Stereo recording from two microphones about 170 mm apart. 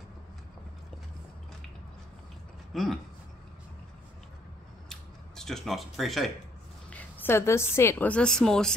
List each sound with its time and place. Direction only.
2.7 s speech: centre (ahead or behind)
4.8 s scissors: 5° left (ahead or behind)
5.9 s a woman's voice: centre (ahead or behind)